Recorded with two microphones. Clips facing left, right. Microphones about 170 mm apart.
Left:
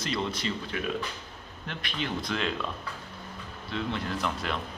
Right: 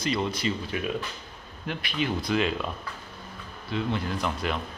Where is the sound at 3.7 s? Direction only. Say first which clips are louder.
Right 3 dB; 5° right (ahead or behind).